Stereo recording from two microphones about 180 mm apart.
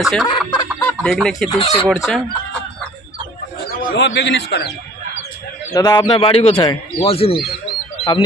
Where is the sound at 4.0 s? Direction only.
75° left (ahead or behind).